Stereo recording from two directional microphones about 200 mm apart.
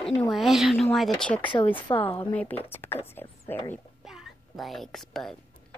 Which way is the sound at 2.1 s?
10° left (ahead or behind).